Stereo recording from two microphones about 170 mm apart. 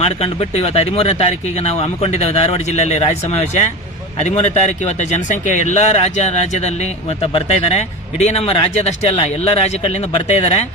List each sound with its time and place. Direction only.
0.0 s speech: 35° left (ahead or behind)